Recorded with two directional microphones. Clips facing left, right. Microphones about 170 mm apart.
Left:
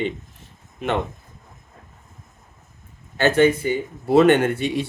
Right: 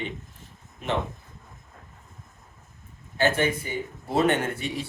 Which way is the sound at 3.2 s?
75° left (ahead or behind).